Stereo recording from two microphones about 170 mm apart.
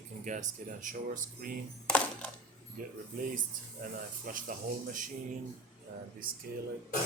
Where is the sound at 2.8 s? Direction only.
50° right (ahead or behind).